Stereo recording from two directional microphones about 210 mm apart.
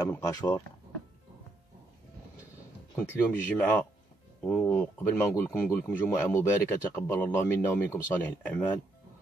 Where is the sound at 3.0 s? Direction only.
10° left (ahead or behind).